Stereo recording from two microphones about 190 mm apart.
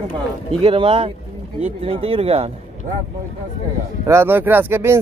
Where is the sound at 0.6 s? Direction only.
30° right (ahead or behind).